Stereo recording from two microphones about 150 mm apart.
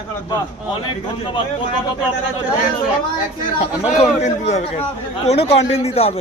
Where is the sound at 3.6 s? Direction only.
45° left (ahead or behind).